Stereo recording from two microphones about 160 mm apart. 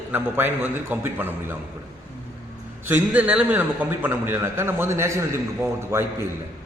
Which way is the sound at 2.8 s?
10° right (ahead or behind).